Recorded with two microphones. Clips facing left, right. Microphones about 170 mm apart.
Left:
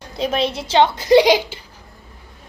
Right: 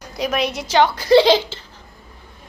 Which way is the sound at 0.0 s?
30° left (ahead or behind).